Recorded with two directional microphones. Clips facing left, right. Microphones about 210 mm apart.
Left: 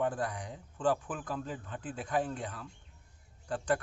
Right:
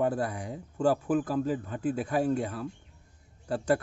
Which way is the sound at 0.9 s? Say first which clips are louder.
Right 11 dB; 40° right (ahead or behind).